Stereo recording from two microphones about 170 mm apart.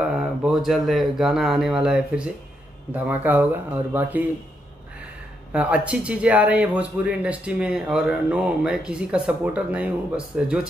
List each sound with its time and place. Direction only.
0.0 s a sound: 5° right (ahead or behind)
0.7 s speech: centre (ahead or behind)
5.5 s speech: 5° right (ahead or behind)